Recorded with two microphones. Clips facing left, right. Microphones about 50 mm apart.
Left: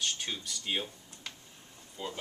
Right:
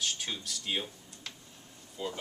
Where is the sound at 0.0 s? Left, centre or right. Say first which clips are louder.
Even; centre.